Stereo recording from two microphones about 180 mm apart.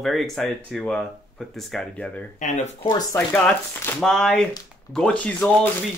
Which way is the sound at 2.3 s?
40° left (ahead or behind).